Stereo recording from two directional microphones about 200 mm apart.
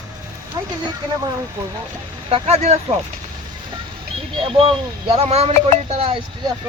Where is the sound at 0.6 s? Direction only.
15° right (ahead or behind).